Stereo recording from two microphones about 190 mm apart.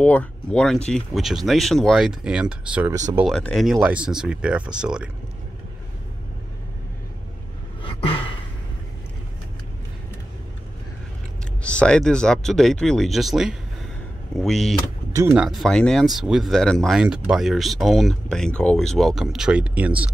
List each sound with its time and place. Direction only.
0.0 s speech: 10° left (ahead or behind)
7.8 s a sound: 30° left (ahead or behind)
11.6 s speech: 5° left (ahead or behind)